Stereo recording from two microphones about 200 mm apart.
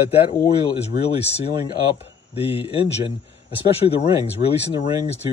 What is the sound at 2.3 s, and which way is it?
Speech, 30° left (ahead or behind).